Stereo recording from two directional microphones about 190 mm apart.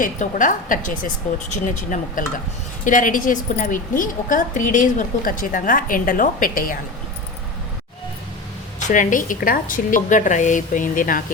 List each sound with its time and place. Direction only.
0.0 s a woman's voice: 40° left (ahead or behind)
8.9 s a woman's voice: 45° left (ahead or behind)